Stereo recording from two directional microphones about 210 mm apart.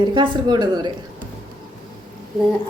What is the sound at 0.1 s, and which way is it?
Speech, 20° right (ahead or behind).